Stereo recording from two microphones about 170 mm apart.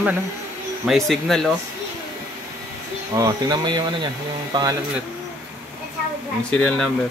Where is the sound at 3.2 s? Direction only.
20° right (ahead or behind).